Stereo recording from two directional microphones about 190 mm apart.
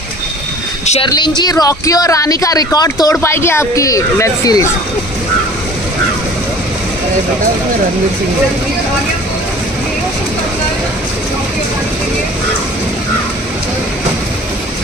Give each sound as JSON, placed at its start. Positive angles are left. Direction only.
{"t": 1.0, "sound": "speech", "side_deg": 20}